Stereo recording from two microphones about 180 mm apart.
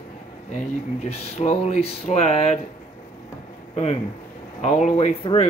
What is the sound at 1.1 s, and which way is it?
Speech, 35° left (ahead or behind).